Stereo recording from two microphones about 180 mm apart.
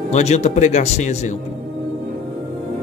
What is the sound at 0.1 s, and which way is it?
Speech, 40° left (ahead or behind).